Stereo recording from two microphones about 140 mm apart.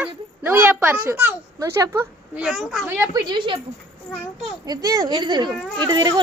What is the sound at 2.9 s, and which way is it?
Speech, 15° right (ahead or behind).